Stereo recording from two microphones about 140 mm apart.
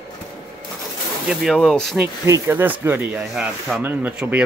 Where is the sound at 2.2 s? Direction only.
20° right (ahead or behind).